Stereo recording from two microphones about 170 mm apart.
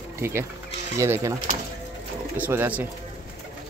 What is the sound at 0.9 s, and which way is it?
Speech, 15° right (ahead or behind).